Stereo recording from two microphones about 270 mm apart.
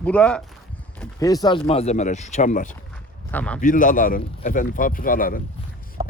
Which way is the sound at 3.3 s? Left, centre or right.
Centre.